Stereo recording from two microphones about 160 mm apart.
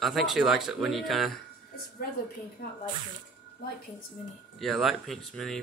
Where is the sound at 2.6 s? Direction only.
65° left (ahead or behind).